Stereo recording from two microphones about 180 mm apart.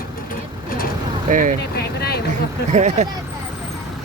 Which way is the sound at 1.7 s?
60° left (ahead or behind).